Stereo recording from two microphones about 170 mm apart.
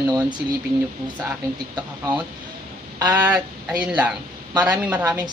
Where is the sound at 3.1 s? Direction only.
10° right (ahead or behind).